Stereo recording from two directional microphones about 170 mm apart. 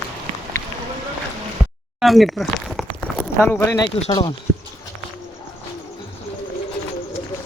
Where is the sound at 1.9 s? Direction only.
Centre (ahead or behind).